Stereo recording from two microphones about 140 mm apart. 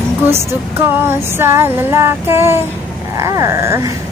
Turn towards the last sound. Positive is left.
turn(degrees=-20)  # may be behind; listen again after turning